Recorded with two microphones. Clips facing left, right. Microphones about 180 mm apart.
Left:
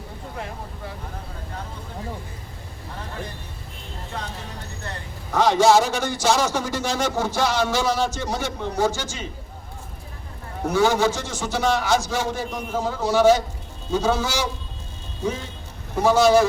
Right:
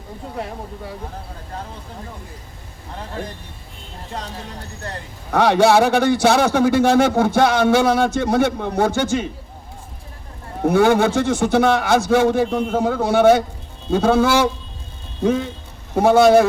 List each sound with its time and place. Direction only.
5.3 s a man's voice: 60° right (ahead or behind)
10.7 s a man's voice: 55° right (ahead or behind)